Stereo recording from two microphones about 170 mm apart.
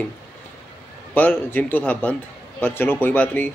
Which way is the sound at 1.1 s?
10° left (ahead or behind).